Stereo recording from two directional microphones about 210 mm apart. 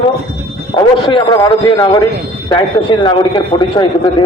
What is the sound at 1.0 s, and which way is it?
A man's voice, 20° left (ahead or behind).